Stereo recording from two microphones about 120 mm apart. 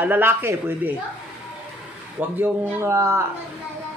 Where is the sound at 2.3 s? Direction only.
15° right (ahead or behind).